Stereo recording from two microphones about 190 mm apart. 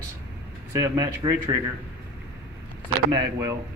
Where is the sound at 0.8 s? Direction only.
20° right (ahead or behind).